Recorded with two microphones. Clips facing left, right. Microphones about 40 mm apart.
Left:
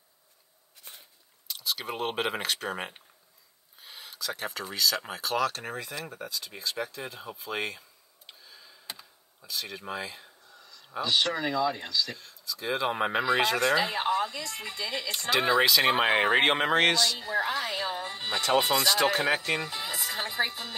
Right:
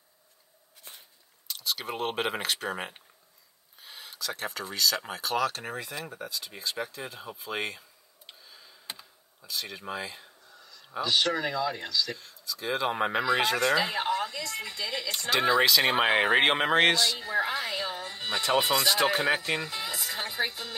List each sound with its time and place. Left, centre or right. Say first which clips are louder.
1.5 s speech: even; centre
8.3 s tick: even; centre
9.4 s a woman's voice: even; centre
15.0 s a woman's voice: even; centre
17.7 s music: left 1 dB; centre
18.4 s speech: left 1 dB; centre
19.7 s a woman's voice: even; centre